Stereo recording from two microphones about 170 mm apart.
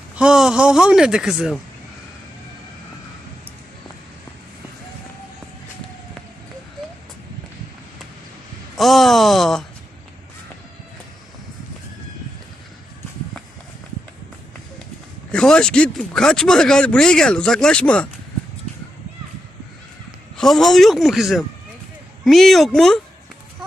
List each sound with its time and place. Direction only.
0.2 s speech: 5° right (ahead or behind)
8.7 s speech: centre (ahead or behind)
15.3 s speech: 5° left (ahead or behind)
20.3 s speech: centre (ahead or behind)